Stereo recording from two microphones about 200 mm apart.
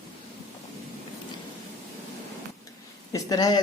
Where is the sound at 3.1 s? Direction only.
20° left (ahead or behind).